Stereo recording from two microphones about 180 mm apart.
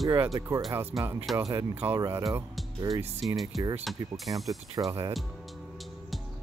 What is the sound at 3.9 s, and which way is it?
Speech, centre (ahead or behind).